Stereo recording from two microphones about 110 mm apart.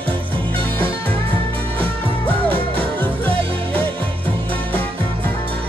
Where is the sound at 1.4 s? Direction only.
55° right (ahead or behind).